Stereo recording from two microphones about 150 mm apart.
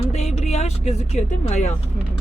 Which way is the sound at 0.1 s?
45° left (ahead or behind).